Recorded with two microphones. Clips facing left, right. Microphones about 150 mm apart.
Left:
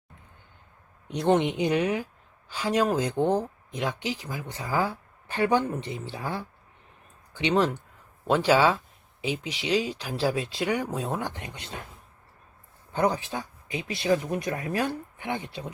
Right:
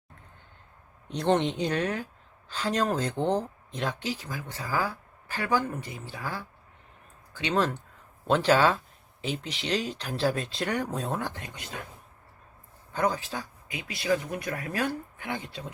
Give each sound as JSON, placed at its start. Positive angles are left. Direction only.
{"t": 1.1, "sound": "speech", "side_deg": 10}
{"t": 11.4, "sound": "speech", "side_deg": 25}
{"t": 12.9, "sound": "speech", "side_deg": 25}